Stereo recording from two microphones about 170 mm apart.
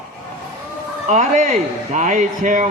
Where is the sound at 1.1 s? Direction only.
45° right (ahead or behind).